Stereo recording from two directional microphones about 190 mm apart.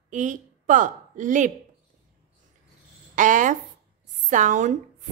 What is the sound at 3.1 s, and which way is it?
A woman's voice, 40° right (ahead or behind).